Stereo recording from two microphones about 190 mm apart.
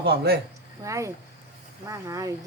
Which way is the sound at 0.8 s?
15° right (ahead or behind).